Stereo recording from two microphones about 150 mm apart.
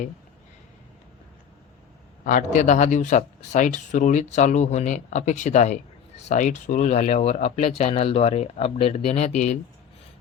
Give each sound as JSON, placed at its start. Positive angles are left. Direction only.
{"t": 2.2, "sound": "speech", "side_deg": 60}